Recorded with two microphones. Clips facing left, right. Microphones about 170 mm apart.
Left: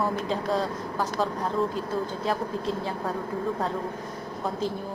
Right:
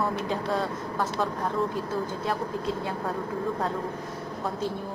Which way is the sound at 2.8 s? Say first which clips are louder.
Even; centre (ahead or behind).